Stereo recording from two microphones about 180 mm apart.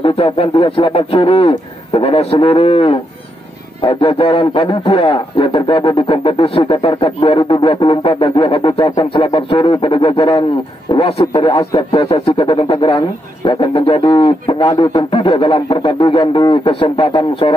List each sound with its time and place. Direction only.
0.0 s speech: 30° left (ahead or behind)